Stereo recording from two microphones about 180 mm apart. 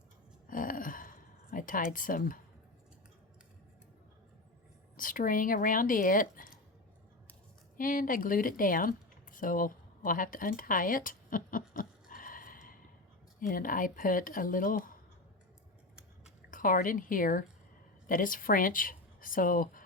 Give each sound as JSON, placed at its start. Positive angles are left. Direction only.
{"t": 0.4, "sound": "a sound", "side_deg": 50}
{"t": 4.9, "sound": "speech", "side_deg": 50}
{"t": 7.8, "sound": "speech", "side_deg": 50}
{"t": 11.8, "sound": "a sound", "side_deg": 50}
{"t": 13.4, "sound": "speech", "side_deg": 50}
{"t": 16.5, "sound": "speech", "side_deg": 50}